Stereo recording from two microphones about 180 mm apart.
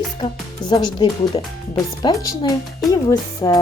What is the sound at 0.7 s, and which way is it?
Speech, 25° left (ahead or behind).